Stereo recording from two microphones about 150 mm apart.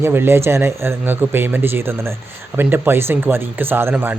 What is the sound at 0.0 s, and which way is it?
Speech, 15° right (ahead or behind).